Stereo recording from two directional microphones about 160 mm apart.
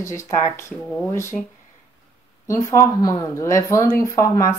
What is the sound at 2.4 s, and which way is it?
Speech, 20° left (ahead or behind).